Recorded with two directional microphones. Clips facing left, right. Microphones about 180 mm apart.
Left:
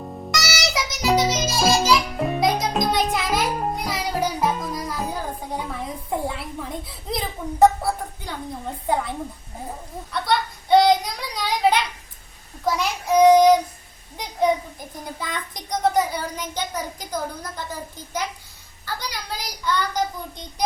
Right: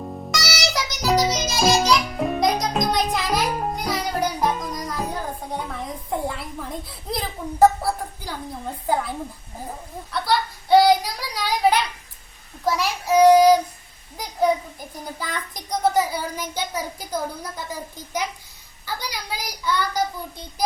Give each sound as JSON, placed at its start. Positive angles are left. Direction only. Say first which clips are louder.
{"t": 0.0, "sound": "music", "louder": "even", "side_deg": 0}
{"t": 12.6, "sound": "child singing", "louder": "even", "side_deg": 0}
{"t": 14.2, "sound": "a child's voice", "louder": "even", "side_deg": 0}